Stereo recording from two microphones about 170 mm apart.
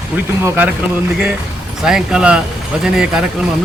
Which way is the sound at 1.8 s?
5° right (ahead or behind).